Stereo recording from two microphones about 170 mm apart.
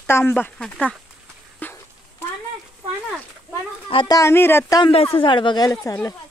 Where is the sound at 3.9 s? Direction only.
25° left (ahead or behind).